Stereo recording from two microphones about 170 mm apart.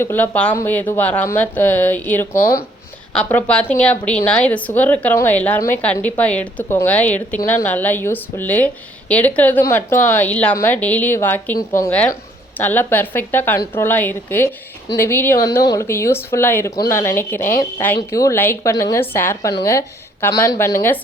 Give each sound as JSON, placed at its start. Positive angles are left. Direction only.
{"t": 0.0, "sound": "a woman's voice", "side_deg": 10}